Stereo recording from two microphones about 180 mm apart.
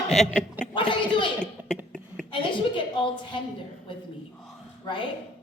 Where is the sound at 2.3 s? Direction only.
25° left (ahead or behind).